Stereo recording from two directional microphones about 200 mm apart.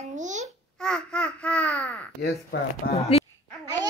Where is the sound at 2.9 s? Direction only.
30° left (ahead or behind).